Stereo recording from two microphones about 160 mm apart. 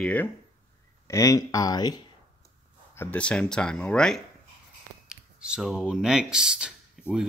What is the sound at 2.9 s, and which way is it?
Speech, 10° left (ahead or behind).